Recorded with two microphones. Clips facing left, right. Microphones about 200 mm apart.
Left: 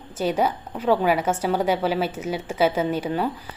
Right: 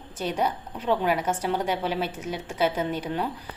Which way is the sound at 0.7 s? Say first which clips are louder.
Left 6 dB; 50° left (ahead or behind).